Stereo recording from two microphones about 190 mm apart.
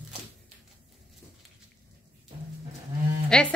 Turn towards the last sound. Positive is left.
turn(degrees=5)  # may be behind; listen again after turning